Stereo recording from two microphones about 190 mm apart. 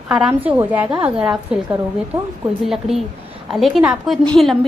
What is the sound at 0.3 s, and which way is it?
A woman's voice, 10° right (ahead or behind).